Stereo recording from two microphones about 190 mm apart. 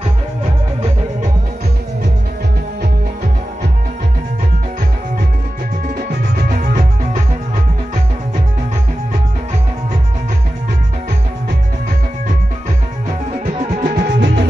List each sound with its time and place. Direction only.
6.5 s music: 45° right (ahead or behind)
13.3 s music: 40° right (ahead or behind)
13.8 s music: 60° right (ahead or behind)